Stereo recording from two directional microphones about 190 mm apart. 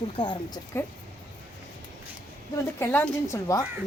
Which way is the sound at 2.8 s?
10° left (ahead or behind).